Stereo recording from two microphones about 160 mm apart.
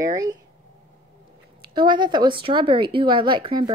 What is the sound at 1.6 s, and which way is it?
Speech, 30° right (ahead or behind).